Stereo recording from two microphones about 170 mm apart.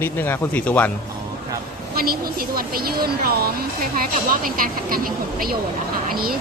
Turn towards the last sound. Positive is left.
turn(degrees=-60)  # may be behind; listen again after turning